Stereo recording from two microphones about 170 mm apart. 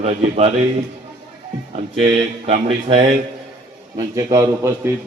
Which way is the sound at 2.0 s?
35° right (ahead or behind).